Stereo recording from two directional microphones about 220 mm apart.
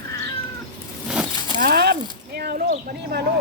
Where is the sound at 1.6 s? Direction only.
45° right (ahead or behind).